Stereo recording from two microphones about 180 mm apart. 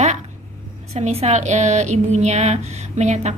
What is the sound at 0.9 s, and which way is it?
A woman's voice, 35° right (ahead or behind).